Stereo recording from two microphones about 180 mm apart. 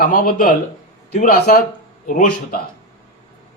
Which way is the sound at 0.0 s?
50° left (ahead or behind).